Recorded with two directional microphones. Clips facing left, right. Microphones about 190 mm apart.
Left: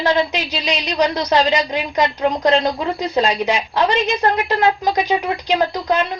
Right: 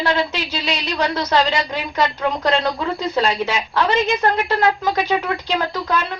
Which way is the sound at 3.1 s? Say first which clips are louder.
Left 3 dB; 20° left (ahead or behind).